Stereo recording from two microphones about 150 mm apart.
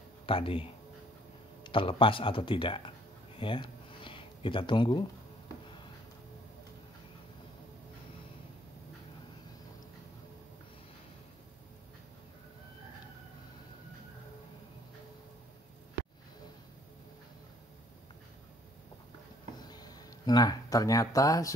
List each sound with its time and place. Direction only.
0.3 s speech: 35° left (ahead or behind)
3.3 s a sound: 35° left (ahead or behind)
19.6 s music: 25° left (ahead or behind)